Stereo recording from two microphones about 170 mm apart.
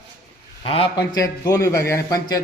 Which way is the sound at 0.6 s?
35° left (ahead or behind).